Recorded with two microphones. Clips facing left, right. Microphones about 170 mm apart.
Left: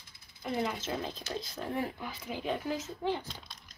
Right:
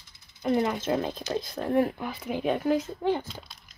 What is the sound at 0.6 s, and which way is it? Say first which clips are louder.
Speech: right 6 dB; 55° right (ahead or behind).